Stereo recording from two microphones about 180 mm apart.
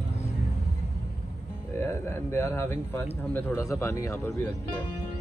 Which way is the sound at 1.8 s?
15° left (ahead or behind).